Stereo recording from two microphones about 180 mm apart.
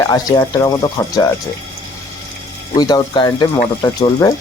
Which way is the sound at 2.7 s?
25° left (ahead or behind).